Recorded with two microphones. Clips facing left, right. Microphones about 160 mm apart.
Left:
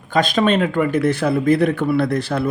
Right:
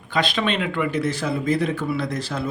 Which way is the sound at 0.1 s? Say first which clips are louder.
Left 6 dB; 45° left (ahead or behind).